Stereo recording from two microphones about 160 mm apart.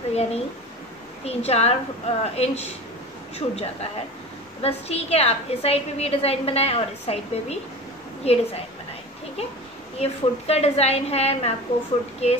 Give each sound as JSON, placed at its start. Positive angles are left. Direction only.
{"t": 0.1, "sound": "a woman's voice", "side_deg": 40}
{"t": 9.9, "sound": "a woman's voice", "side_deg": 40}